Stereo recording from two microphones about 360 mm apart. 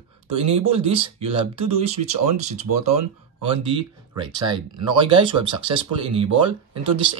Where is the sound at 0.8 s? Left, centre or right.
Centre.